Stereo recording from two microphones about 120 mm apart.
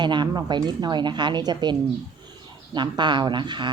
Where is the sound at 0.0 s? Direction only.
40° right (ahead or behind).